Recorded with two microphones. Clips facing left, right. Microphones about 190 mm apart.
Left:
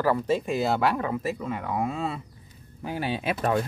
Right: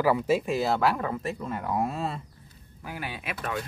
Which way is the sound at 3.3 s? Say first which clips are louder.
Left 8 dB; 40° left (ahead or behind).